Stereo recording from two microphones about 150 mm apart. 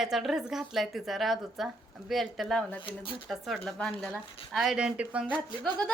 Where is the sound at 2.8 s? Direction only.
35° left (ahead or behind).